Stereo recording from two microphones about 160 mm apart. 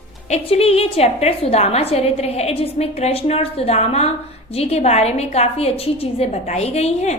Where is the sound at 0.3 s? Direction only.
40° left (ahead or behind).